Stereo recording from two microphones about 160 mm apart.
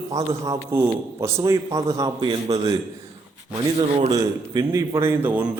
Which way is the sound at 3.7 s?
40° right (ahead or behind).